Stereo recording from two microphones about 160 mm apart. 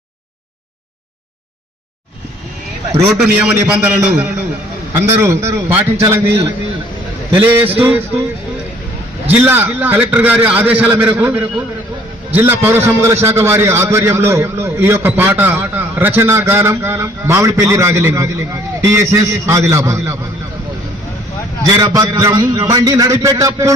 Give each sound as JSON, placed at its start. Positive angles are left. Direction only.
{"t": 3.2, "sound": "a man's voice", "side_deg": -5}
{"t": 9.3, "sound": "a man's voice", "side_deg": -10}
{"t": 21.7, "sound": "a man's voice", "side_deg": -25}